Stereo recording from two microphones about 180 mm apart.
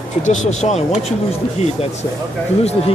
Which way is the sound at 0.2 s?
40° left (ahead or behind).